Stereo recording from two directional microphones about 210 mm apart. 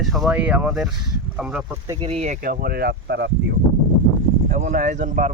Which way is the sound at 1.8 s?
25° right (ahead or behind).